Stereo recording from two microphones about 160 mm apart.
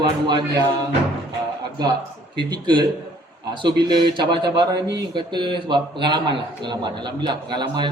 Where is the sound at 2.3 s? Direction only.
25° right (ahead or behind).